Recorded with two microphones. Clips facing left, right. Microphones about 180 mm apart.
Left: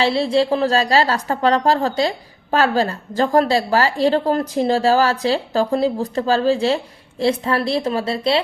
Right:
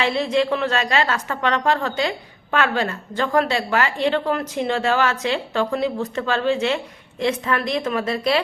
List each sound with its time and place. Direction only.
0.0 s a woman's voice: 30° left (ahead or behind)